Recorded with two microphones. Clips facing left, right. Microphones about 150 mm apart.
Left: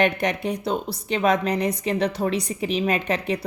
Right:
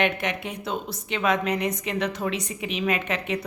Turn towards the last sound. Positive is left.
turn(degrees=35)  # may be behind; listen again after turning